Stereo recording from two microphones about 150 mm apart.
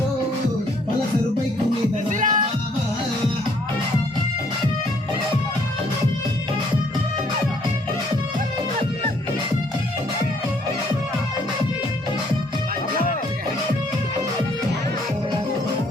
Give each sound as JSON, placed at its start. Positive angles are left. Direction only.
{"t": 2.0, "sound": "music", "side_deg": -60}